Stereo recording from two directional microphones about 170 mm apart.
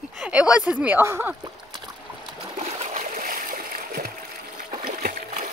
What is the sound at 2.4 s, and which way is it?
Splash, 40° right (ahead or behind).